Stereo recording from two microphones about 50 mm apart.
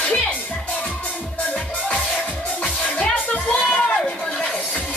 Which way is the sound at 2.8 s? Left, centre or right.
Centre.